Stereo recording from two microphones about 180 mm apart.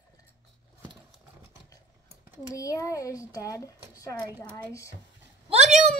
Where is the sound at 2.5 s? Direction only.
20° left (ahead or behind).